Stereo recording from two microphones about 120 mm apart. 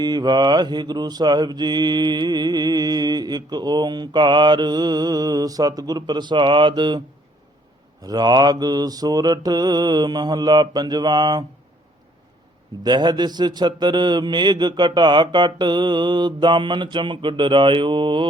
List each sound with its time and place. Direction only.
0.0 s mantra: 35° right (ahead or behind)
8.0 s mantra: 35° right (ahead or behind)
12.8 s mantra: 35° right (ahead or behind)